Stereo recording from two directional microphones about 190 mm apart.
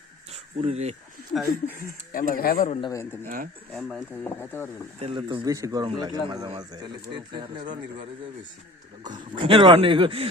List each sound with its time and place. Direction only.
0.3 s insect: 35° right (ahead or behind)
1.3 s speech: centre (ahead or behind)
2.1 s speech: 50° left (ahead or behind)
2.8 s speech: 15° left (ahead or behind)
3.2 s speech: 50° right (ahead or behind)
3.7 s speech: 5° left (ahead or behind)
4.9 s speech: 30° right (ahead or behind)
9.0 s speech: 25° right (ahead or behind)